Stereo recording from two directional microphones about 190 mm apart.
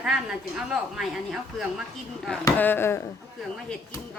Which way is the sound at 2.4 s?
10° left (ahead or behind).